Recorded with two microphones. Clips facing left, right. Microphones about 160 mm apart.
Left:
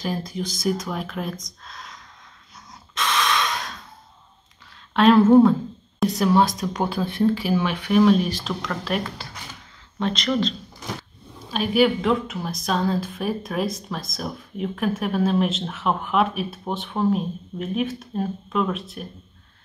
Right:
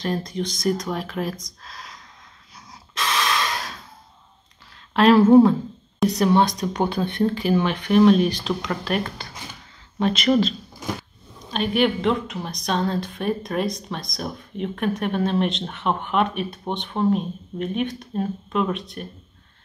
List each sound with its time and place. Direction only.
0.0 s speech: 5° left (ahead or behind)
2.9 s breathing: centre (ahead or behind)
4.9 s speech: centre (ahead or behind)
11.5 s speech: 5° left (ahead or behind)